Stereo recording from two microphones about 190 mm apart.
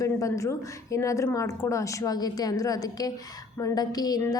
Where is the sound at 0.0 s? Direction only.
15° left (ahead or behind).